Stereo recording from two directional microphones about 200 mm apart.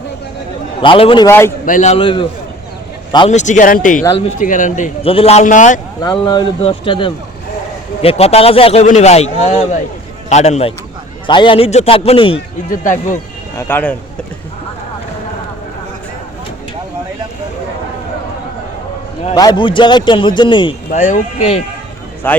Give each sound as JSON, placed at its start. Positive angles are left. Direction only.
{"t": 0.8, "sound": "a man's voice", "side_deg": 25}
{"t": 1.3, "sound": "speech", "side_deg": 10}
{"t": 1.6, "sound": "a man's voice", "side_deg": 40}
{"t": 3.2, "sound": "a man's voice", "side_deg": 35}
{"t": 4.0, "sound": "a man's voice", "side_deg": 25}
{"t": 4.4, "sound": "a man's voice", "side_deg": 40}
{"t": 6.0, "sound": "a man's voice", "side_deg": 20}
{"t": 12.7, "sound": "a man's voice", "side_deg": 40}
{"t": 13.6, "sound": "speech", "side_deg": 10}
{"t": 19.3, "sound": "a man's voice", "side_deg": 20}
{"t": 20.9, "sound": "a man's voice", "side_deg": 35}
{"t": 22.2, "sound": "speech", "side_deg": 10}